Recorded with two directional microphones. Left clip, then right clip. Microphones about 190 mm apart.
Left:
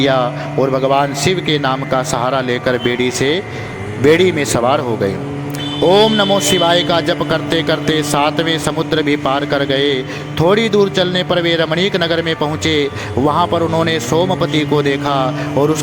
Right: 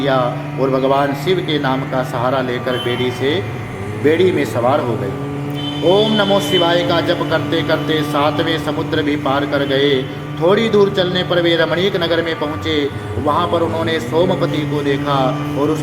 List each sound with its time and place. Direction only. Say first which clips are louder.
0.0 s a man's voice: left 2 dB; 40° left (ahead or behind)
5.9 s a man's voice: left 2 dB; 45° left (ahead or behind)